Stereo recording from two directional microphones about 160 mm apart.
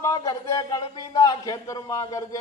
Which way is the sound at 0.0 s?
20° left (ahead or behind).